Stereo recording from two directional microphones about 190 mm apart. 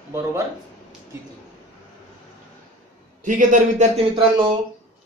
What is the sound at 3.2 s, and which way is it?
Speech, 40° right (ahead or behind).